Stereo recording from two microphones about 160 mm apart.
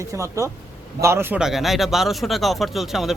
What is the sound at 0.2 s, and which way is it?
Speech, 20° right (ahead or behind).